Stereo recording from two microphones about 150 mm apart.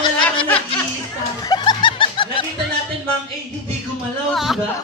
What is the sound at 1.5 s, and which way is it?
Snicker, 30° left (ahead or behind).